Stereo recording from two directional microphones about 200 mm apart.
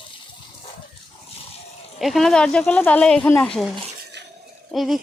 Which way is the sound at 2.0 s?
Centre (ahead or behind).